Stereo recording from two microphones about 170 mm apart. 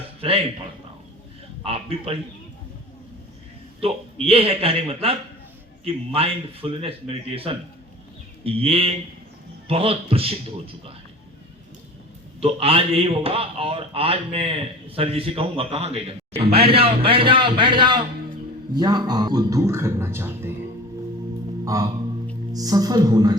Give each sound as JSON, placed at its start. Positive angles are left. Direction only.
{"t": 0.2, "sound": "speech", "side_deg": -35}
{"t": 1.6, "sound": "a man's voice", "side_deg": -35}
{"t": 3.8, "sound": "a man's voice", "side_deg": -35}
{"t": 12.4, "sound": "a man's voice", "side_deg": -35}
{"t": 21.6, "sound": "music", "side_deg": -20}
{"t": 22.5, "sound": "a man's voice", "side_deg": -20}